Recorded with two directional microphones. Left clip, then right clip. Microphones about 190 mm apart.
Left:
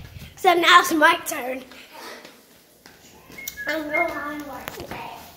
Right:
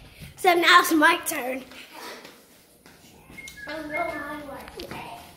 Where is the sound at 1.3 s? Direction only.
10° right (ahead or behind).